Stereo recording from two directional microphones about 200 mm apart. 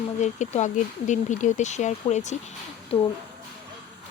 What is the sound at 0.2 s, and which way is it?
Speech, 35° left (ahead or behind).